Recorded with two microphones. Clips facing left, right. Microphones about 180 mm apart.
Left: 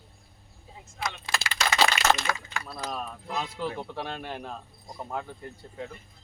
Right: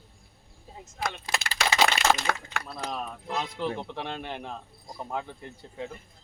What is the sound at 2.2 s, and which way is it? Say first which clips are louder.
Speech: right 1 dB; 65° right (ahead or behind).